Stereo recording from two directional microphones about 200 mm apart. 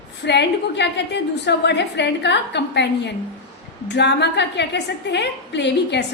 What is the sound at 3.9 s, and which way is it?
A woman's voice, 60° left (ahead or behind).